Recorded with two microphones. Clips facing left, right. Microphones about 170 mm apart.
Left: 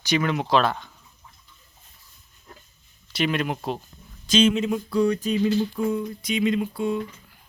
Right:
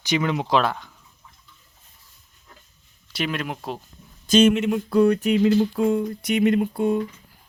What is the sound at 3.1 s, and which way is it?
Speech, centre (ahead or behind).